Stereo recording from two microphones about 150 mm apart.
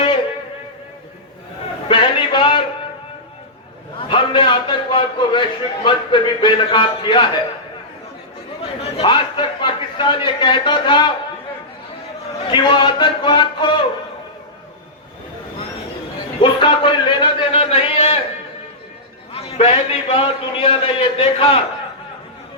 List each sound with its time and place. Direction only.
1.9 s a sound: 35° left (ahead or behind)
4.1 s a man's voice: 35° left (ahead or behind)
9.0 s a man's voice: 35° left (ahead or behind)
12.5 s a man's voice: 30° left (ahead or behind)
16.4 s a man's voice: 35° left (ahead or behind)
19.3 s a man's voice: 40° left (ahead or behind)